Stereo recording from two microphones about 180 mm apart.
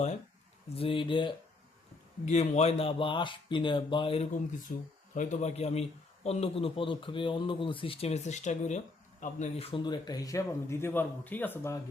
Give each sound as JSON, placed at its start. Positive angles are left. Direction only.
{"t": 0.8, "sound": "speech", "side_deg": 30}
{"t": 2.2, "sound": "speech", "side_deg": 40}
{"t": 5.1, "sound": "speech", "side_deg": 45}